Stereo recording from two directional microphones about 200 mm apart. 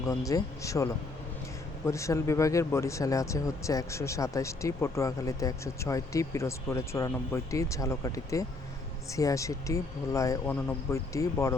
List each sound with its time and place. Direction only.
0.0 s speech: 15° left (ahead or behind)